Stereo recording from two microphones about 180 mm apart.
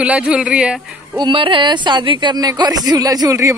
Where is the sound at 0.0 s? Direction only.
5° right (ahead or behind).